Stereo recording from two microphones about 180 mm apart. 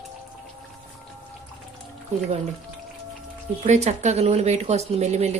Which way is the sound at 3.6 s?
40° right (ahead or behind).